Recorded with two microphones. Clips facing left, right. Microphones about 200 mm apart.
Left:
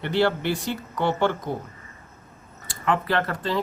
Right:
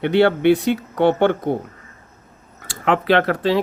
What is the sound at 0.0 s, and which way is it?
Speech, 65° right (ahead or behind).